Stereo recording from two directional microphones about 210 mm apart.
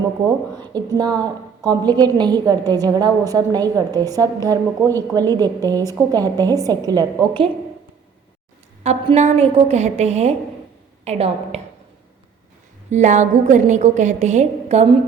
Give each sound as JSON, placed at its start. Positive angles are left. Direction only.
{"t": 0.7, "sound": "a woman's voice", "side_deg": -20}
{"t": 8.8, "sound": "a woman's voice", "side_deg": -30}
{"t": 12.9, "sound": "a woman's voice", "side_deg": -35}